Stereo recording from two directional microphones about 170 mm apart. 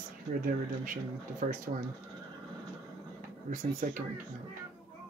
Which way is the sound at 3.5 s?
50° right (ahead or behind).